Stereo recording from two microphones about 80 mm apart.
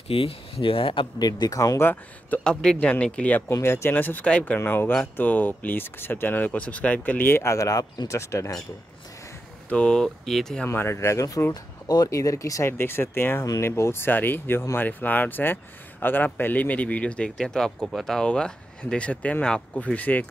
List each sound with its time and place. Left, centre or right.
0.6 s speech: left
1.8 s speech: left
2.4 s speech: centre
4.6 s speech: left
9.7 s speech: centre
10.7 s speech: left
12.7 s speech: left